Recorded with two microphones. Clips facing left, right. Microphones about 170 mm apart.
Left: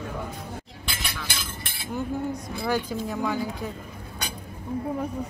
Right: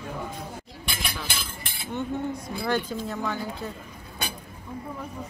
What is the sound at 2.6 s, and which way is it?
Speech, 10° left (ahead or behind).